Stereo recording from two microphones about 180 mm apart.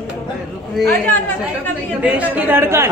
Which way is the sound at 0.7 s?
5° left (ahead or behind).